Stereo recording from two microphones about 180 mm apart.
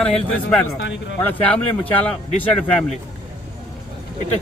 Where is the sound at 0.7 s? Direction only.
90° left.